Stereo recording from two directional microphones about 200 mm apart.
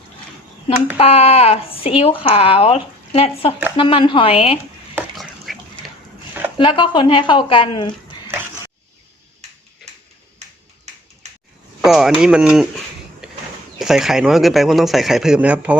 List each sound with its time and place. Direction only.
0.9 s speech: 30° left (ahead or behind)
5.5 s duck: centre (ahead or behind)
6.6 s speech: 25° left (ahead or behind)
11.9 s speech: centre (ahead or behind)
13.2 s a sound: 5° right (ahead or behind)
13.7 s speech: centre (ahead or behind)